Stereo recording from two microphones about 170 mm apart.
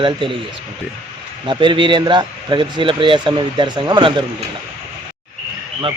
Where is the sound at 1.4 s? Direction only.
30° right (ahead or behind).